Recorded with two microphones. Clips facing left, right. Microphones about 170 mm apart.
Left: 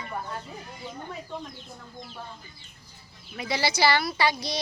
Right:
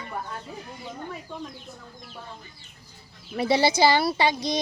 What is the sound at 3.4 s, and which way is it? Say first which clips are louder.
Speech: right 5 dB; 25° right (ahead or behind).